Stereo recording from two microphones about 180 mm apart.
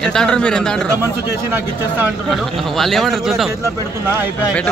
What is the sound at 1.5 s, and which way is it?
Speech, 10° right (ahead or behind).